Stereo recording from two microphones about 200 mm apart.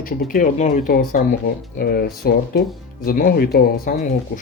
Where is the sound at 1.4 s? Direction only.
55° left (ahead or behind).